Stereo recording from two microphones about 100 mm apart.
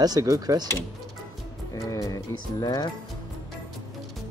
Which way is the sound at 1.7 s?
35° left (ahead or behind).